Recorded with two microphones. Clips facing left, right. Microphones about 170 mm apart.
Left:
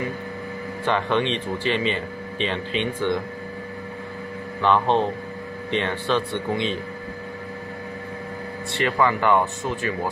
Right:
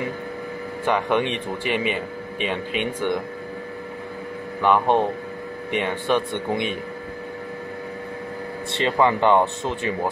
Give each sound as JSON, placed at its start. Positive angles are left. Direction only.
{"t": 0.8, "sound": "speech", "side_deg": -15}
{"t": 4.6, "sound": "speech", "side_deg": -10}
{"t": 8.7, "sound": "speech", "side_deg": -20}